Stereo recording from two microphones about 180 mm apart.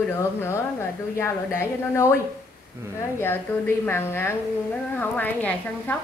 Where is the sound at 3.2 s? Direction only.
10° left (ahead or behind).